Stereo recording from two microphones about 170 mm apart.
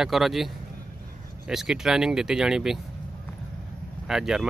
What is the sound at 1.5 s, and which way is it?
Speech, 5° right (ahead or behind).